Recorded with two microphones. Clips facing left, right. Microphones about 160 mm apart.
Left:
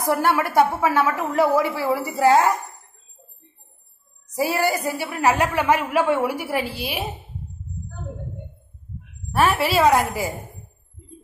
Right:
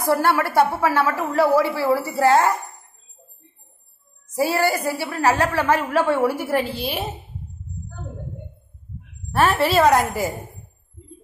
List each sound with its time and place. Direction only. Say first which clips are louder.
0.1 s a woman's voice: right 1 dB; 20° left (ahead or behind)
4.4 s a woman's voice: right 1 dB; 15° left (ahead or behind)
9.3 s a woman's voice: right 1 dB; 5° left (ahead or behind)